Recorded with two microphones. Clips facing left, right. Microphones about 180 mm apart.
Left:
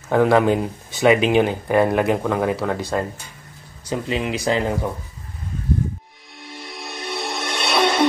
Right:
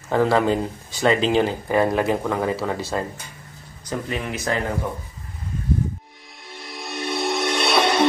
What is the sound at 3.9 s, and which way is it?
Speech, 20° left (ahead or behind).